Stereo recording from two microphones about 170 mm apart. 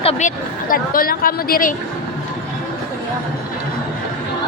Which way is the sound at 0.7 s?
55° left (ahead or behind).